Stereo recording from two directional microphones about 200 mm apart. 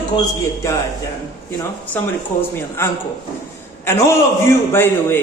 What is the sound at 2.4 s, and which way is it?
A man's voice, 10° left (ahead or behind).